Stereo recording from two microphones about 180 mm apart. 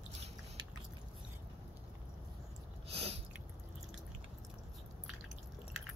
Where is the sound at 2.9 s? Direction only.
35° right (ahead or behind).